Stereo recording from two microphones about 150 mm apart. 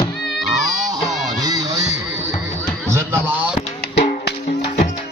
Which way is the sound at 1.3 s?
25° right (ahead or behind).